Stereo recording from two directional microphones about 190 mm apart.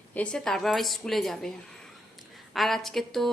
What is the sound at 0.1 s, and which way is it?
A woman's voice, 5° left (ahead or behind).